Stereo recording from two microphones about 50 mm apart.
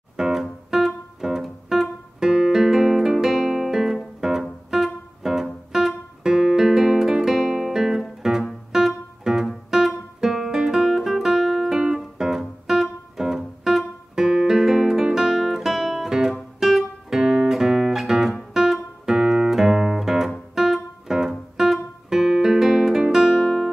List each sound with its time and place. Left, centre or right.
0.2 s music: centre
9.7 s guitar: centre
11.8 s music: centre
16.5 s guitar: centre
18.5 s music: centre
23.0 s guitar: centre
23.4 s music: centre